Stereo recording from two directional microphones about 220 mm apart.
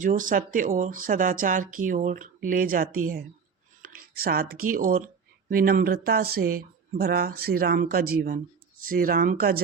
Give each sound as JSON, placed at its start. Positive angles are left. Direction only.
{"t": 0.0, "sound": "speech", "side_deg": -35}